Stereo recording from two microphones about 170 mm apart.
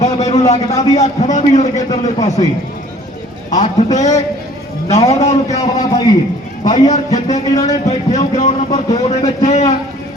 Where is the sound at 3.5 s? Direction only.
45° left (ahead or behind).